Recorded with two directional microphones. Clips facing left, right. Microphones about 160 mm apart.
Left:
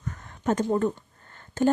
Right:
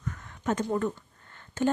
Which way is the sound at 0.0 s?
35° left (ahead or behind).